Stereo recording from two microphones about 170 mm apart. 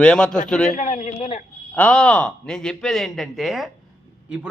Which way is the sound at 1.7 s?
10° left (ahead or behind).